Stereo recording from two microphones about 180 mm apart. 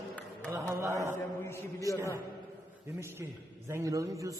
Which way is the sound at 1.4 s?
15° left (ahead or behind).